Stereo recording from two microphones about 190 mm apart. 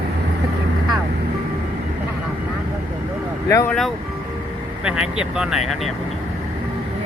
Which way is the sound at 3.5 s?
15° left (ahead or behind).